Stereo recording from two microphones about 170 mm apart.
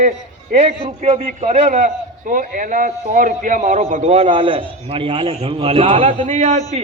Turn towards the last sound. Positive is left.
turn(degrees=-45)  # may be behind; listen again after turning